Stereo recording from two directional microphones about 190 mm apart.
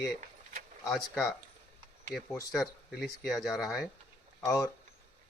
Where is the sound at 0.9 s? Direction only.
Centre (ahead or behind).